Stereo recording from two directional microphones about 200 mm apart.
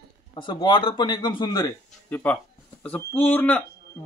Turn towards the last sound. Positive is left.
turn(degrees=10)  # may be behind; listen again after turning